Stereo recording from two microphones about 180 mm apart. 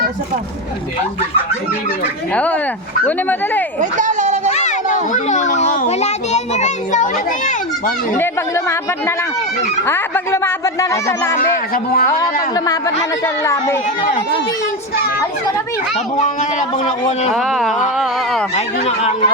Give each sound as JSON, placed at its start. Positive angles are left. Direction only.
{"t": 2.3, "sound": "speech", "side_deg": 5}
{"t": 3.8, "sound": "a sound", "side_deg": -45}
{"t": 4.5, "sound": "a sound", "side_deg": 40}
{"t": 5.1, "sound": "a child's voice", "side_deg": 40}
{"t": 8.2, "sound": "speech", "side_deg": 15}
{"t": 11.3, "sound": "a child's voice", "side_deg": 55}
{"t": 13.2, "sound": "speech", "side_deg": 15}
{"t": 16.1, "sound": "speech", "side_deg": 40}
{"t": 17.3, "sound": "speech", "side_deg": 0}
{"t": 18.5, "sound": "speech", "side_deg": 35}